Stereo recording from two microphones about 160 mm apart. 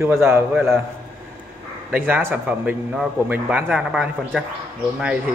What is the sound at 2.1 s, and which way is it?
A man's voice, 10° right (ahead or behind).